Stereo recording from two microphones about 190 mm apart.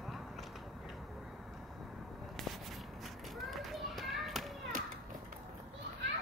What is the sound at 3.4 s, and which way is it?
Children playing, centre (ahead or behind).